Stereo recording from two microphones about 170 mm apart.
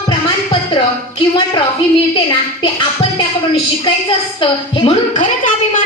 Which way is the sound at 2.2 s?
30° left (ahead or behind).